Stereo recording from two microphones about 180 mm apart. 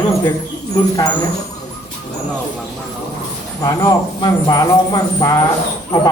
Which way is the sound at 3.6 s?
20° left (ahead or behind).